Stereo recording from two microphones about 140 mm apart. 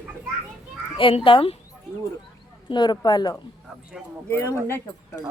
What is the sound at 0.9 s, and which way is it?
Speech, 40° left (ahead or behind).